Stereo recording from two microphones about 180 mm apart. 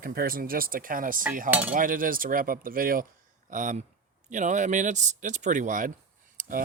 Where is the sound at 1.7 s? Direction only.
50° right (ahead or behind).